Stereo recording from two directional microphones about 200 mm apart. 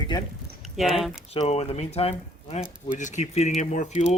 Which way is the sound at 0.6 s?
Centre (ahead or behind).